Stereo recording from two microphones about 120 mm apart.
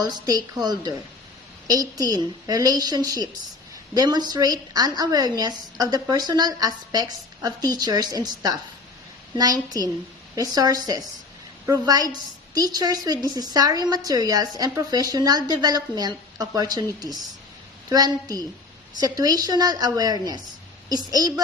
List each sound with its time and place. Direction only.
0.0 s a woman's voice: 35° right (ahead or behind)